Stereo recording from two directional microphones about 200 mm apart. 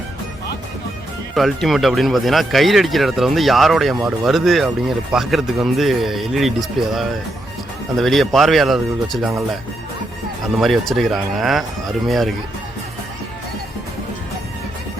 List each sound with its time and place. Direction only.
1.4 s speech: centre (ahead or behind)
10.6 s speech: centre (ahead or behind)